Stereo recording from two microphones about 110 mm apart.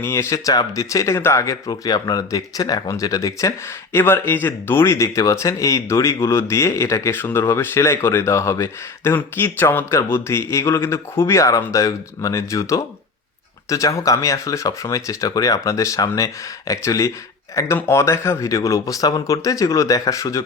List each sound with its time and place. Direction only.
0.0 s speech: 25° left (ahead or behind)
3.9 s speech: 20° left (ahead or behind)